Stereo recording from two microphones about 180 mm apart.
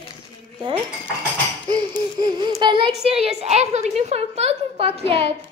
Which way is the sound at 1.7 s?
20° right (ahead or behind).